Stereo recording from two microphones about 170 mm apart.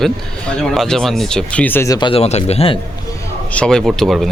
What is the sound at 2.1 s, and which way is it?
Speech, 40° left (ahead or behind).